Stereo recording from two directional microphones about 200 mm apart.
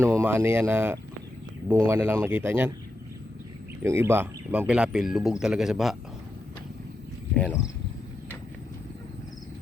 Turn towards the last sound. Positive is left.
turn(degrees=10)  # may be behind; listen again after turning